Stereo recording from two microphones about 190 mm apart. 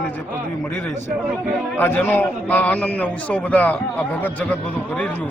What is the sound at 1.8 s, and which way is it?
A man's voice, 10° left (ahead or behind).